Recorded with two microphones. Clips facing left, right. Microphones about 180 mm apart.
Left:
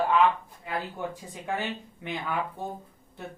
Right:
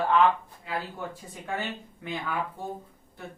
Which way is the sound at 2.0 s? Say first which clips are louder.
Even; 20° left (ahead or behind).